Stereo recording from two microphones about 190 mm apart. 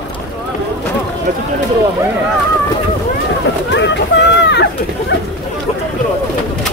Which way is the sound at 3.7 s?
65° left (ahead or behind).